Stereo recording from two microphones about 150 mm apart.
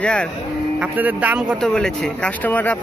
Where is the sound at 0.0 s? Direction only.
5° left (ahead or behind).